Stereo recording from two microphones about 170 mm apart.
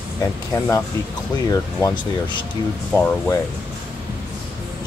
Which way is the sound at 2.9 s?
10° left (ahead or behind).